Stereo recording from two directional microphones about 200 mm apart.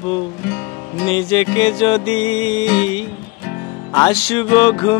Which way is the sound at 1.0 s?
25° left (ahead or behind).